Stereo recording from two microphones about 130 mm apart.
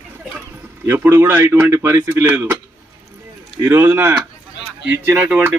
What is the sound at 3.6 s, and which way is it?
Speech, 20° right (ahead or behind).